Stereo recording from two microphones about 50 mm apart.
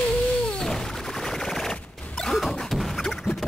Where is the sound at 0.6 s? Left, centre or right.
Centre.